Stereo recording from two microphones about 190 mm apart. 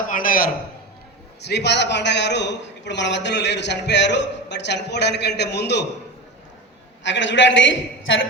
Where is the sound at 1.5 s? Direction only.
65° left (ahead or behind).